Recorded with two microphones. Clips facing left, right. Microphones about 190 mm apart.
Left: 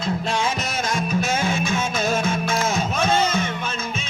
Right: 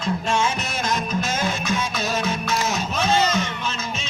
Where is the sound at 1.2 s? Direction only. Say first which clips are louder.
Left 2 dB; 50° left (ahead or behind).